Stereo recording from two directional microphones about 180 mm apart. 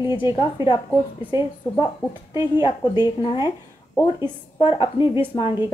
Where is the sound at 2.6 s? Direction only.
25° left (ahead or behind).